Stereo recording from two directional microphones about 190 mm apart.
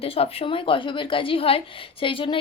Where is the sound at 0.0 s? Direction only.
30° left (ahead or behind).